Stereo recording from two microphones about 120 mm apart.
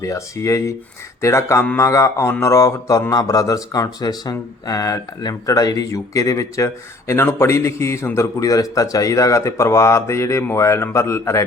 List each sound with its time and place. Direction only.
0.0 s a man's voice: 25° left (ahead or behind)